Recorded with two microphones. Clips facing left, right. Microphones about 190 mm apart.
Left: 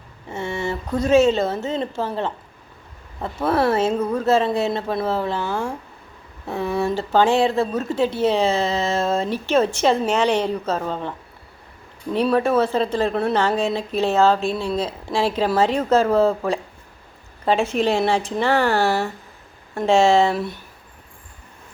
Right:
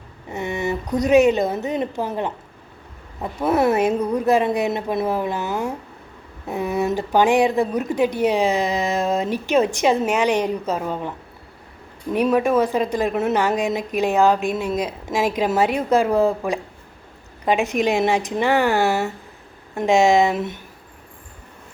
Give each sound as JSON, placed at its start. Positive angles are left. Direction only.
{"t": 0.3, "sound": "a woman's voice", "side_deg": -15}
{"t": 12.1, "sound": "speech", "side_deg": -15}